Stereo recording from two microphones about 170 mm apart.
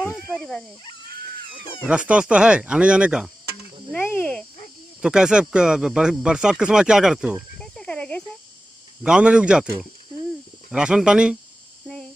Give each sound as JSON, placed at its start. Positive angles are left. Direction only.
{"t": 0.1, "sound": "speech", "side_deg": 5}
{"t": 1.9, "sound": "speech", "side_deg": -5}
{"t": 3.9, "sound": "speech", "side_deg": 10}
{"t": 5.0, "sound": "speech", "side_deg": -5}
{"t": 9.0, "sound": "speech", "side_deg": -5}